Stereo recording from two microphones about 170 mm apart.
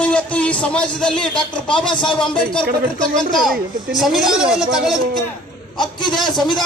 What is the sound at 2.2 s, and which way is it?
Speech, 5° left (ahead or behind).